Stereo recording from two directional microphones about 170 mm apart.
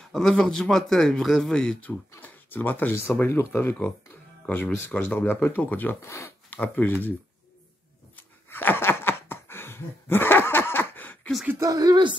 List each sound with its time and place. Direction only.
0.1 s speech: 5° left (ahead or behind)
8.2 s a sound: 10° left (ahead or behind)
11.4 s speech: 20° right (ahead or behind)